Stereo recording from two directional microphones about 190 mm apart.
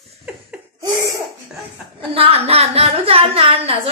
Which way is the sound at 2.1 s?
30° right (ahead or behind).